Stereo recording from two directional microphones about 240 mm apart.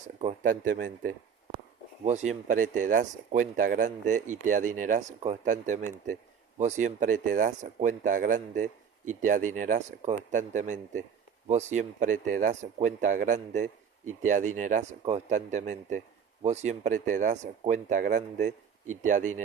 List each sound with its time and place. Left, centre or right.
0.2 s speech: right
2.0 s speech: right